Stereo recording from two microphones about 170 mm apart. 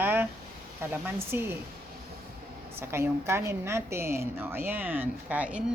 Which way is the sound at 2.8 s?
15° right (ahead or behind).